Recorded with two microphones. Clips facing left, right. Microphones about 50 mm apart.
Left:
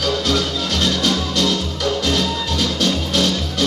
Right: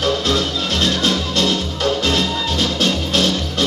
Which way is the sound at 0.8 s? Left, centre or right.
Right.